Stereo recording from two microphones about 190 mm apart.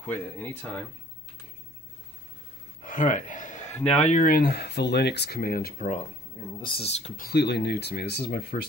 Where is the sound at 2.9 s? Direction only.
45° left (ahead or behind).